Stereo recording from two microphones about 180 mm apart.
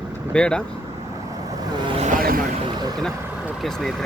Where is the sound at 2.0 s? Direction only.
55° right (ahead or behind).